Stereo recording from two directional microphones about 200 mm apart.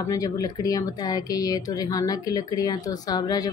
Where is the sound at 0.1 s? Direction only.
20° left (ahead or behind).